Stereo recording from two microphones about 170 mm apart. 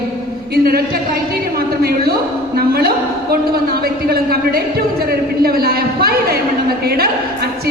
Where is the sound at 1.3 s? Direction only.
65° right (ahead or behind).